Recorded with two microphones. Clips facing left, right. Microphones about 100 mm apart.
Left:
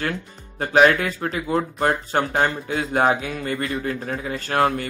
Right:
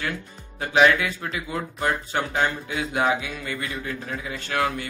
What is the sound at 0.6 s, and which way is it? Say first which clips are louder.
Speech: left 3 dB; 45° left (ahead or behind).